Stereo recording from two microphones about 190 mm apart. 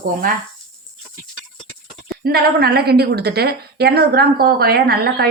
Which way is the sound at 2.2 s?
55° right (ahead or behind).